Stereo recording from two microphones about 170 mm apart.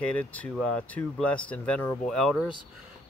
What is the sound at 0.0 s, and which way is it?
Speech, 10° left (ahead or behind).